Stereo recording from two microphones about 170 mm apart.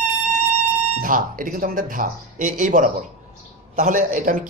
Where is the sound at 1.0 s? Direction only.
55° right (ahead or behind).